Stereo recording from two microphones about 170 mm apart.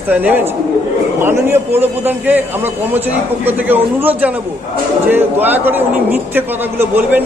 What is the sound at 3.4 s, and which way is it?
A man's voice, 10° right (ahead or behind).